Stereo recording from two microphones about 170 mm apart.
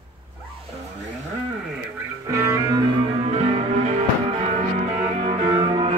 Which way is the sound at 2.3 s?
20° right (ahead or behind).